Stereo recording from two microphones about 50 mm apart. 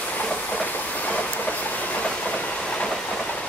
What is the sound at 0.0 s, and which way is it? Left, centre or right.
Train, left.